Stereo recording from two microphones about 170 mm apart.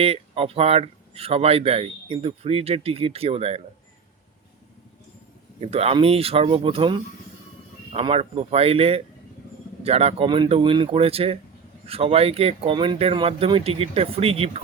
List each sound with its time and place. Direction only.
0.0 s speech: 35° right (ahead or behind)
5.5 s speech: 35° right (ahead or behind)